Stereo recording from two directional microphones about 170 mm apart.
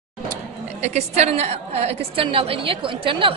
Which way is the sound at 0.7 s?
40° right (ahead or behind).